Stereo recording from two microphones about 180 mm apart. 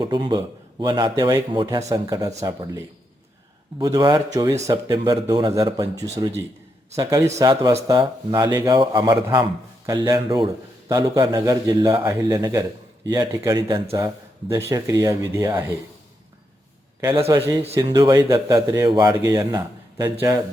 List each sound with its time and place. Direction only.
0.0 s a man's voice: 25° right (ahead or behind)
17.0 s a man's voice: 15° right (ahead or behind)